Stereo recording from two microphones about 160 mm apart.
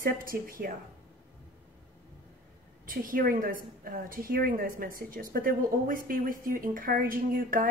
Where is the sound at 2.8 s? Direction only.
60° right (ahead or behind).